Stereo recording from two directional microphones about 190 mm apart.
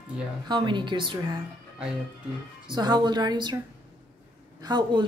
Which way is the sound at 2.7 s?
25° right (ahead or behind).